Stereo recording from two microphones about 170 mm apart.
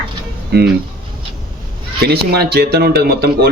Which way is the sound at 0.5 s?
75° right (ahead or behind).